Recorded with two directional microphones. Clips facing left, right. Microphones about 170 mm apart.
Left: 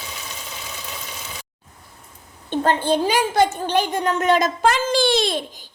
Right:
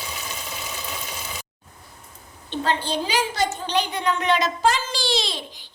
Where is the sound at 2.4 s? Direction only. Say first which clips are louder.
Left 6 dB; 50° left (ahead or behind).